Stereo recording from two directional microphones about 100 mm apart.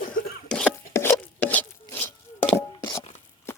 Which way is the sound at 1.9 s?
20° left (ahead or behind).